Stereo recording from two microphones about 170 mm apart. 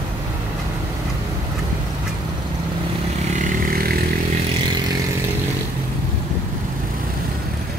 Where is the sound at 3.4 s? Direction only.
60° right (ahead or behind).